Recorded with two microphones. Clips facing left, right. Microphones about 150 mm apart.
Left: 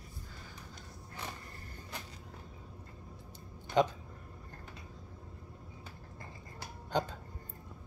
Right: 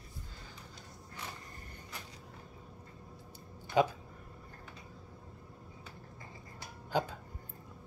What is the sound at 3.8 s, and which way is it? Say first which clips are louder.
Speech: even; 10° right (ahead or behind).